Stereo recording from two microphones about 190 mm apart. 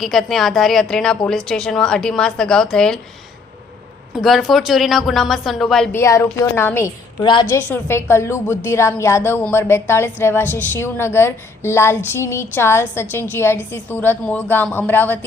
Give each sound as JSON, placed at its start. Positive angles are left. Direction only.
{"t": 0.0, "sound": "a woman's voice", "side_deg": 0}
{"t": 4.1, "sound": "a woman's voice", "side_deg": 0}
{"t": 6.0, "sound": "a woman's voice", "side_deg": 15}
{"t": 7.7, "sound": "a woman's voice", "side_deg": 15}